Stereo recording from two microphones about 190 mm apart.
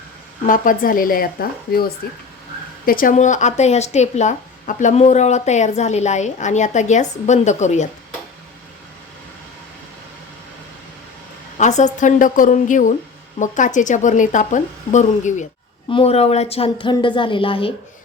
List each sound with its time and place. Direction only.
0.4 s speech: 45° left (ahead or behind)
11.5 s a woman's voice: 40° left (ahead or behind)